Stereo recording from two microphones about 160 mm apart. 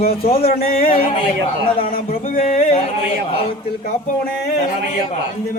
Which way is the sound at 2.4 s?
45° left (ahead or behind).